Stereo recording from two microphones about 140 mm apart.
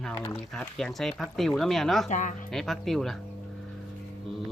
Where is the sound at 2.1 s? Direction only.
65° left (ahead or behind).